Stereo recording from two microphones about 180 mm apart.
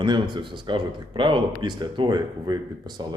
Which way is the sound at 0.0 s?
25° right (ahead or behind).